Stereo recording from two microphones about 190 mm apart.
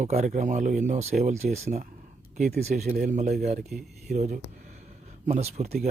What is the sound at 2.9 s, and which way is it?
Speech, 45° right (ahead or behind).